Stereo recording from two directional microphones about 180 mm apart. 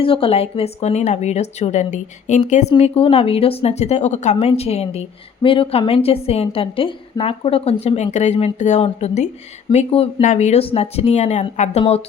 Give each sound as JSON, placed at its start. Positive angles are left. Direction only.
{"t": 0.0, "sound": "speech", "side_deg": 30}